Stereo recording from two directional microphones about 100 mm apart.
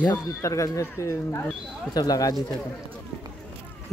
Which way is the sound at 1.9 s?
40° left (ahead or behind).